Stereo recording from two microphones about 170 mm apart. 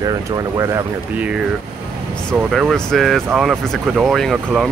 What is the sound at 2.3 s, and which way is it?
Speech, 5° right (ahead or behind).